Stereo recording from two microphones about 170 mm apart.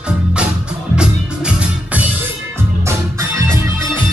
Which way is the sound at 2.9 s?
15° right (ahead or behind).